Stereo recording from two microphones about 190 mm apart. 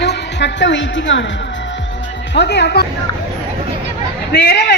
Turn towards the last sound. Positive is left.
turn(degrees=65)  # may be behind; listen again after turning